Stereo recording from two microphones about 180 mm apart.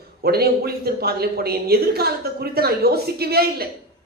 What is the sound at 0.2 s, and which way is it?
Speech, 60° right (ahead or behind).